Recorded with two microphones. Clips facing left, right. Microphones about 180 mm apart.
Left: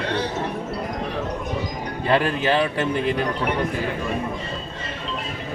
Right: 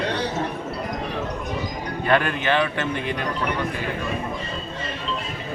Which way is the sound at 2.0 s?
30° left (ahead or behind).